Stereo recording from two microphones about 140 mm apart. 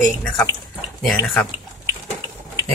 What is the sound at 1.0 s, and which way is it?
Speech, centre (ahead or behind).